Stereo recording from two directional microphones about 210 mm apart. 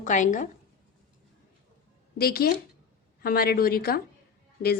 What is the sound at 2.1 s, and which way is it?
A woman's voice, 45° left (ahead or behind).